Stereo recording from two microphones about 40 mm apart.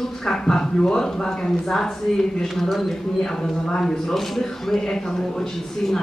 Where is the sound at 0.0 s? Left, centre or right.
Centre.